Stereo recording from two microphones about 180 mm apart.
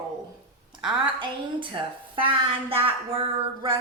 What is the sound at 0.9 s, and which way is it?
A woman's voice, 25° right (ahead or behind).